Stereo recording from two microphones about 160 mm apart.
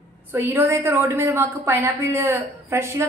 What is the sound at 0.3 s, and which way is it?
A woman's voice, 15° right (ahead or behind).